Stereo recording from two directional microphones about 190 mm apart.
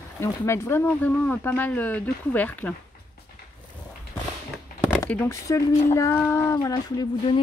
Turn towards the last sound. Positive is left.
turn(degrees=20)  # may be behind; listen again after turning